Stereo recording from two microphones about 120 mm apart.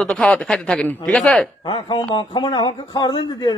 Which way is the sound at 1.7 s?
45° left (ahead or behind).